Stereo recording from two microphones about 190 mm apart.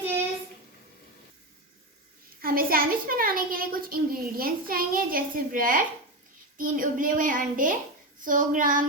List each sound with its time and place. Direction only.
2.4 s a child's voice: 50° right (ahead or behind)